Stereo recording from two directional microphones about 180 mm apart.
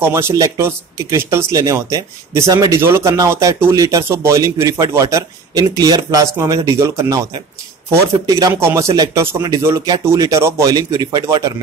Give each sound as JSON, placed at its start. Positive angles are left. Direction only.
{"t": 0.0, "sound": "speech", "side_deg": -15}